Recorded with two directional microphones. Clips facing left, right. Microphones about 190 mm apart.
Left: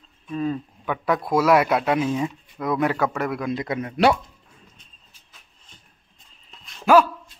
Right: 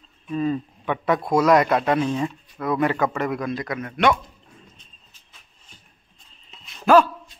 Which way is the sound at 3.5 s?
25° left (ahead or behind).